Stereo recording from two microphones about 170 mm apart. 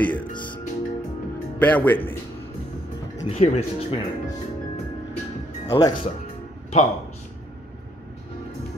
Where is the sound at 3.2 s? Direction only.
40° left (ahead or behind).